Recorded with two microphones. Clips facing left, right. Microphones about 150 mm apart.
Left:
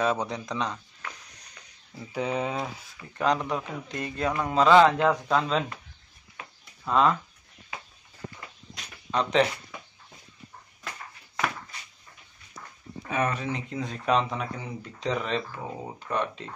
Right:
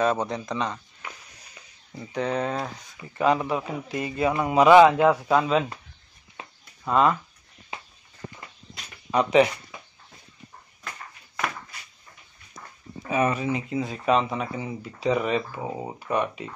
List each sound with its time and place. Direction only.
0.0 s speech: centre (ahead or behind)
6.4 s a sound: 30° right (ahead or behind)
6.8 s speech: 5° right (ahead or behind)
9.1 s speech: 10° right (ahead or behind)
13.1 s speech: 5° right (ahead or behind)